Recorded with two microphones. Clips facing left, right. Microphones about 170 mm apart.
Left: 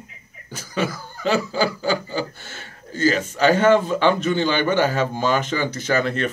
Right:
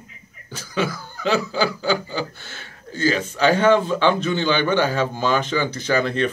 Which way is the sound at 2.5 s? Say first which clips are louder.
Left 1 dB; 45° left (ahead or behind).